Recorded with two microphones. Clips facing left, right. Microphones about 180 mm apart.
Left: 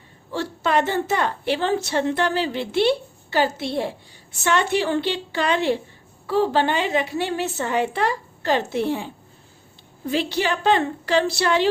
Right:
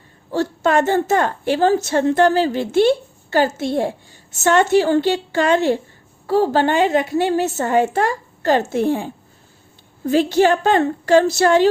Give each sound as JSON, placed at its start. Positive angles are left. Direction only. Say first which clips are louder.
{"t": 0.3, "sound": "a woman's voice", "louder": "right 6 dB", "side_deg": -45}